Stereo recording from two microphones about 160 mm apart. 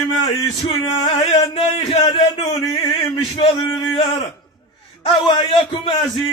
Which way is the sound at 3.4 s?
30° left (ahead or behind).